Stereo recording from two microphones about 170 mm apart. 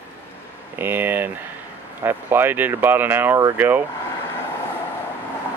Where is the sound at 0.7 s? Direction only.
10° right (ahead or behind).